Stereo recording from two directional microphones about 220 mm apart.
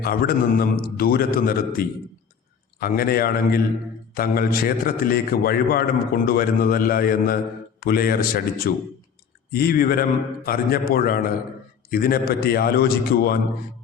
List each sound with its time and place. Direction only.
0.0 s a man's voice: 40° left (ahead or behind)